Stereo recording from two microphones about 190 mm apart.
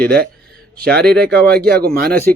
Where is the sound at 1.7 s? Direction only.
55° right (ahead or behind).